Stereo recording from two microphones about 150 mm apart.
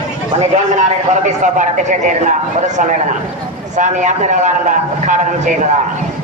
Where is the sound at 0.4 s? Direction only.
55° right (ahead or behind).